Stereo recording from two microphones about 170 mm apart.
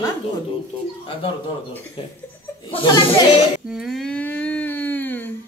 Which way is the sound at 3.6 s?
Centre (ahead or behind).